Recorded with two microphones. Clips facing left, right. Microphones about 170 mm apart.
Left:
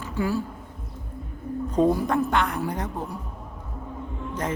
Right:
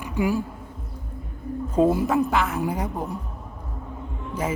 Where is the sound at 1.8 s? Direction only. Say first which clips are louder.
Right 2 dB; 5° right (ahead or behind).